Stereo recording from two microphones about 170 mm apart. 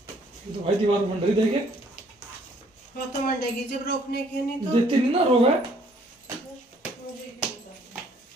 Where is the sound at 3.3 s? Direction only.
70° left (ahead or behind).